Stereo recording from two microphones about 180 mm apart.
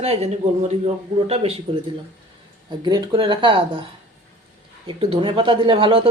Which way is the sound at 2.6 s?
25° right (ahead or behind).